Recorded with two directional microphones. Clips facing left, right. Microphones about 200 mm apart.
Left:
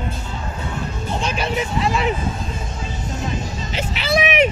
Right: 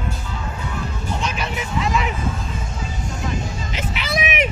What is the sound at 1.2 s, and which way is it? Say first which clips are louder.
Vehicle: left 7 dB; 30° left (ahead or behind).